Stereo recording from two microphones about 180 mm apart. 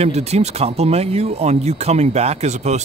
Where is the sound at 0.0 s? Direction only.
35° right (ahead or behind).